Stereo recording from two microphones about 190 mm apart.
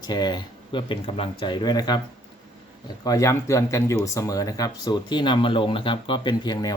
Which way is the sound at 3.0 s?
20° left (ahead or behind).